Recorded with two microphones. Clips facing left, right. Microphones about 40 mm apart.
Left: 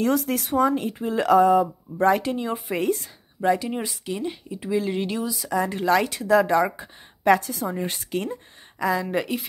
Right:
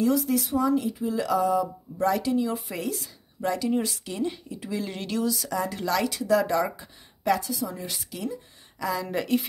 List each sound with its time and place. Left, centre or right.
0.0 s speech: left
3.3 s speech: left
5.6 s speech: left
7.2 s speech: left
8.7 s speech: left
9.0 s speech: centre